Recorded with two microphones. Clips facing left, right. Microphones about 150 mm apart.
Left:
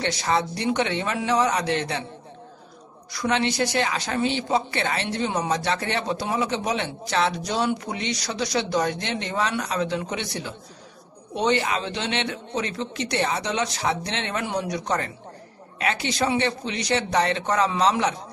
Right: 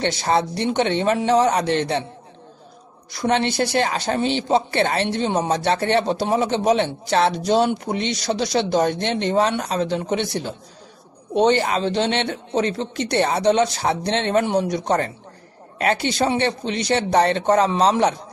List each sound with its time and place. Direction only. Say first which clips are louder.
0.0 s a woman's voice: right 4 dB; 30° right (ahead or behind)
3.1 s a woman's voice: right 3 dB; 30° right (ahead or behind)